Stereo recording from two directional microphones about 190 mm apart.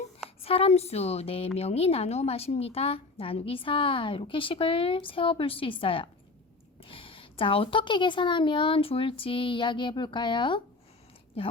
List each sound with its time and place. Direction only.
0.4 s a woman's voice: 30° left (ahead or behind)